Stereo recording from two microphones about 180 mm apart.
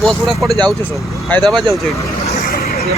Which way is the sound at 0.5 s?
20° right (ahead or behind).